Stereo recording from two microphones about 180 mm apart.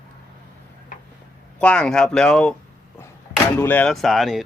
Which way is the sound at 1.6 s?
5° left (ahead or behind).